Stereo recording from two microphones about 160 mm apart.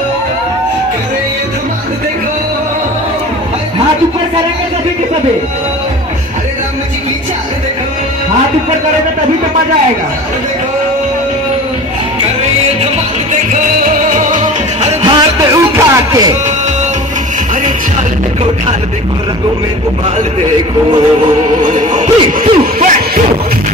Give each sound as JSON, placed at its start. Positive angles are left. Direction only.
{"t": 13.3, "sound": "music", "side_deg": -50}
{"t": 15.0, "sound": "music", "side_deg": -25}
{"t": 21.6, "sound": "music", "side_deg": -50}